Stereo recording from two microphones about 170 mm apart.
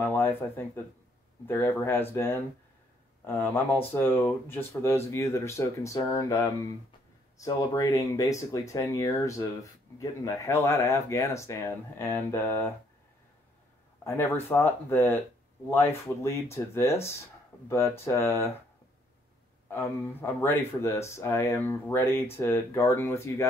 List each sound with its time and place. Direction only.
0.0 s speech: 10° left (ahead or behind)
14.0 s speech: 10° left (ahead or behind)
19.7 s speech: 15° left (ahead or behind)